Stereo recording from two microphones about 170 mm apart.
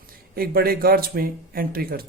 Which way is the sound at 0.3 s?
60° right (ahead or behind).